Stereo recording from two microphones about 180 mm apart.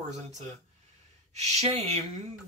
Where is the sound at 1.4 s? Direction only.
40° right (ahead or behind).